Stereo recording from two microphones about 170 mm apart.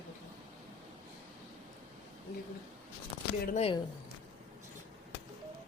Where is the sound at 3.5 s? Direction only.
35° left (ahead or behind).